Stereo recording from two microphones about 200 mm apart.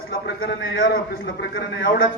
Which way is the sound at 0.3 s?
70° left (ahead or behind).